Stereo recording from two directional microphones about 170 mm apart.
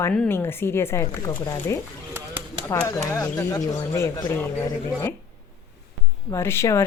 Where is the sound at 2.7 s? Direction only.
15° left (ahead or behind).